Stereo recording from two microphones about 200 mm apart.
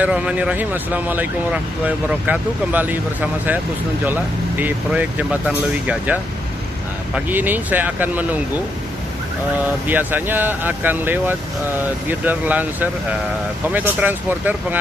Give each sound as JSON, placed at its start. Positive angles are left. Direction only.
{"t": 0.0, "sound": "speech", "side_deg": -5}
{"t": 7.2, "sound": "speech", "side_deg": -10}
{"t": 9.8, "sound": "speech", "side_deg": -10}